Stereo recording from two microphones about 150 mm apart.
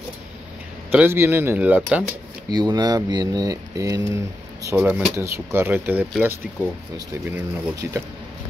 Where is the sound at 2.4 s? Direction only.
25° right (ahead or behind); by 6.1 s 10° right (ahead or behind).